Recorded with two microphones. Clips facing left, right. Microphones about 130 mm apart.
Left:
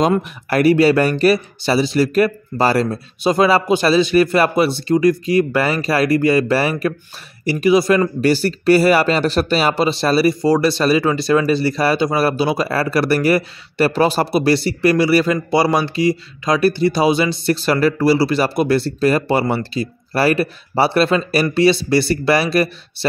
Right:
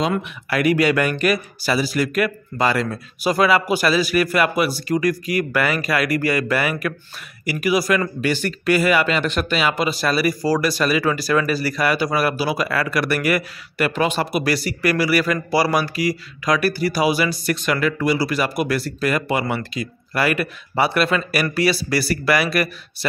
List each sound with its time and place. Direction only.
0.1 s speech: 35° left (ahead or behind)
8.2 s speech: 35° left (ahead or behind)